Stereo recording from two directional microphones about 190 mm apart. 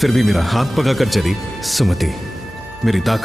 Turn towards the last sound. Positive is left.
turn(degrees=0)  # may be behind; listen again after turning